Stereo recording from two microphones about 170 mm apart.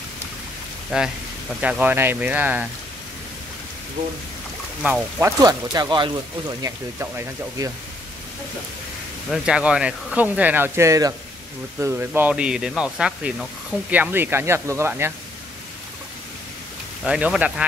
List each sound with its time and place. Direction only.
0.9 s speech: 5° right (ahead or behind)
4.8 s speech: 10° right (ahead or behind)
5.2 s speech: 20° right (ahead or behind)
9.3 s speech: 5° right (ahead or behind)
17.0 s speech: 5° right (ahead or behind)